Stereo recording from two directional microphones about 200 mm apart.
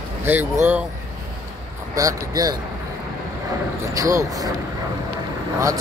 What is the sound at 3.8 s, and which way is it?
Speech, 15° right (ahead or behind).